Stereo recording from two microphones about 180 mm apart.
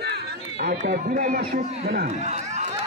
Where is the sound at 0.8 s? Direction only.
55° right (ahead or behind).